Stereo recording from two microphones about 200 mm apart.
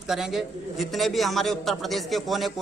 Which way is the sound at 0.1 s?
Centre (ahead or behind).